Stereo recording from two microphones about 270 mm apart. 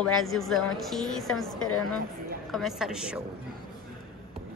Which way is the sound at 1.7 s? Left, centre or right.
Left.